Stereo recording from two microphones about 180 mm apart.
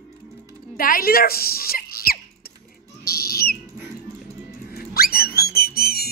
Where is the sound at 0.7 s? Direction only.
55° left (ahead or behind).